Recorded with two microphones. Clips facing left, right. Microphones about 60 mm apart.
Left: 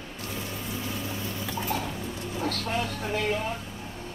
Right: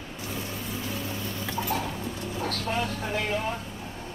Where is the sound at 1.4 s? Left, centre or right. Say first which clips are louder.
Right 2 dB; centre.